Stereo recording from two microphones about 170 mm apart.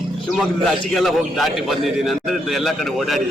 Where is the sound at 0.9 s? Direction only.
Centre (ahead or behind).